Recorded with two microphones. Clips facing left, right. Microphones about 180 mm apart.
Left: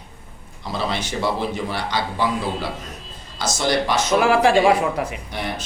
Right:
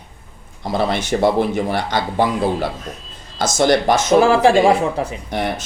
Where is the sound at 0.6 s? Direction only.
55° right (ahead or behind).